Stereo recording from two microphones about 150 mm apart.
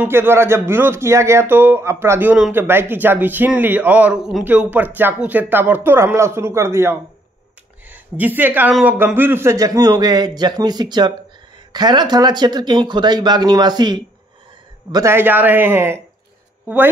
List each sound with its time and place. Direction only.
0.0 s a man's voice: 15° right (ahead or behind)